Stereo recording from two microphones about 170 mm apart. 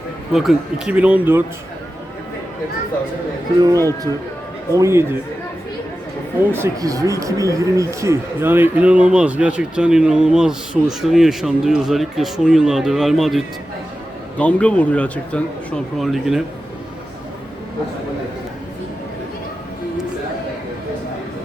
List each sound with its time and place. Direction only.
0.3 s a man's voice: 5° right (ahead or behind)
3.6 s a man's voice: 20° right (ahead or behind)
6.5 s speech: 15° right (ahead or behind); by 16.4 s centre (ahead or behind)